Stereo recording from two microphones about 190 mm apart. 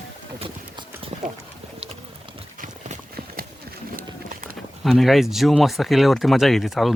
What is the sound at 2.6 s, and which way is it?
Clip-clop, 45° right (ahead or behind).